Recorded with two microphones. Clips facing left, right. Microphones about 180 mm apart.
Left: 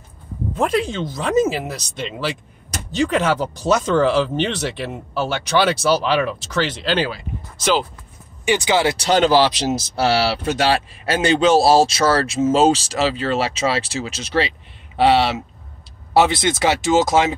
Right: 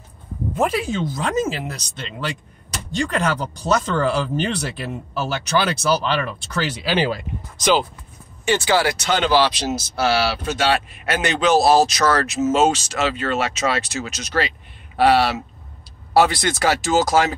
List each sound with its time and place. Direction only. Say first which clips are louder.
0.6 s speech: left 1 dB; 5° right (ahead or behind)
8.5 s speech: left 1 dB; 15° left (ahead or behind)
8.9 s speech: left 3 dB; 35° left (ahead or behind)